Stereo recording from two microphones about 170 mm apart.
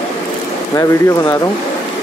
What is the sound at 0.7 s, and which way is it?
Speech, 15° left (ahead or behind).